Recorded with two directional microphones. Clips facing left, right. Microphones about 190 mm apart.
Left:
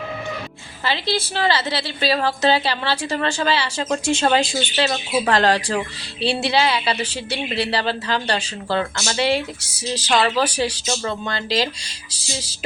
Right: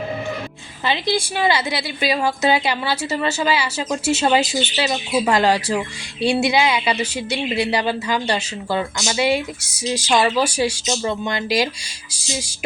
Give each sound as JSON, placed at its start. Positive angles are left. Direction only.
{"t": 0.9, "sound": "a woman's voice", "side_deg": -15}